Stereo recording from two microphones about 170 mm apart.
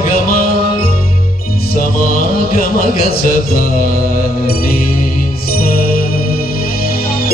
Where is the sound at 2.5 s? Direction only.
60° left (ahead or behind).